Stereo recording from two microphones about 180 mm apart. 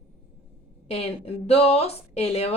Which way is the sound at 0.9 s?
35° left (ahead or behind).